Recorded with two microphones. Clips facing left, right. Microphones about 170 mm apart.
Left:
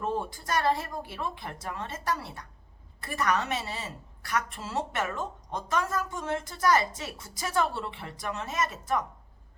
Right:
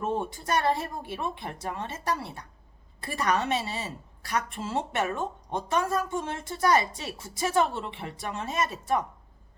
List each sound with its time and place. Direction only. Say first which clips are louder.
0.0 s a woman's voice: right 2 dB; 20° right (ahead or behind)